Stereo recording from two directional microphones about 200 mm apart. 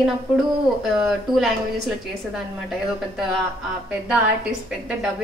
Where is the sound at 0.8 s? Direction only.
Centre (ahead or behind).